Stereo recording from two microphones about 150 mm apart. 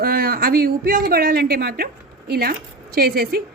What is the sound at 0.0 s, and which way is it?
A man's voice, 85° right.